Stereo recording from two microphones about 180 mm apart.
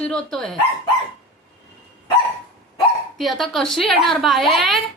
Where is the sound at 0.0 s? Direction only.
5° left (ahead or behind).